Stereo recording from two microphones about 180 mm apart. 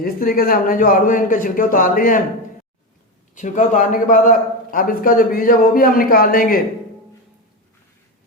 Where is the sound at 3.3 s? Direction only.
45° left (ahead or behind).